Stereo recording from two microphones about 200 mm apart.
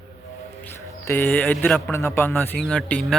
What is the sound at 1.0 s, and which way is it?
A man's voice, 10° left (ahead or behind).